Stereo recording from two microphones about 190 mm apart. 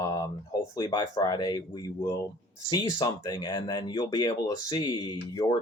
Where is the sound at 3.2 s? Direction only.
20° left (ahead or behind).